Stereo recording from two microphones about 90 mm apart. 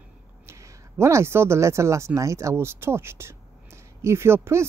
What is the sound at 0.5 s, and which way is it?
Speech, 35° right (ahead or behind).